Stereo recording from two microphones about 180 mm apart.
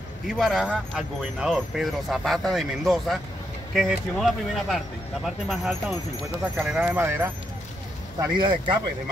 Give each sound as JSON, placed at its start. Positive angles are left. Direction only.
{"t": 0.4, "sound": "speech", "side_deg": 0}
{"t": 8.2, "sound": "speech", "side_deg": -25}